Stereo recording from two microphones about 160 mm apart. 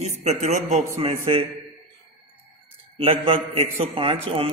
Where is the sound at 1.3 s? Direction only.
35° right (ahead or behind).